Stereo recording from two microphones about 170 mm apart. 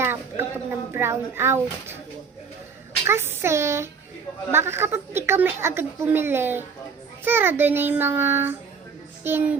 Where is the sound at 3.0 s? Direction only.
15° right (ahead or behind).